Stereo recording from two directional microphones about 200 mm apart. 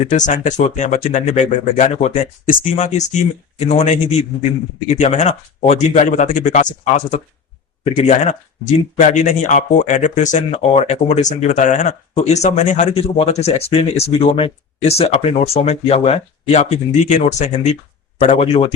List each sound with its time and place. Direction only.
0.1 s speech: 35° left (ahead or behind)